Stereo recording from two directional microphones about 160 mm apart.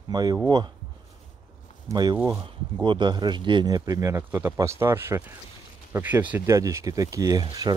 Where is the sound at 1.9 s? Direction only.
25° right (ahead or behind).